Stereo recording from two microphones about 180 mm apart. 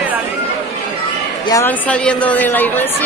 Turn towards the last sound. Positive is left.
turn(degrees=10)  # may be behind; listen again after turning